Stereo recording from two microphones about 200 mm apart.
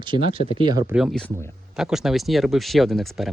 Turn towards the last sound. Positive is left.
turn(degrees=0)  # may be behind; listen again after turning